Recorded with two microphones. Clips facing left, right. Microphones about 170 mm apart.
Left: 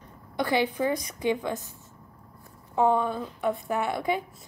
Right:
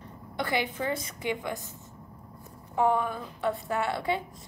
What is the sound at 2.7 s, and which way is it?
A woman's voice, 20° left (ahead or behind).